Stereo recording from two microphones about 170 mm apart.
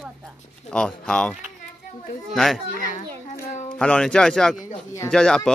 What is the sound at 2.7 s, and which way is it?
Children playing, 50° left (ahead or behind).